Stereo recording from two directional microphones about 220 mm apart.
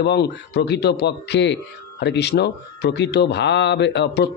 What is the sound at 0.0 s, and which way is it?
A man's voice, 50° left (ahead or behind).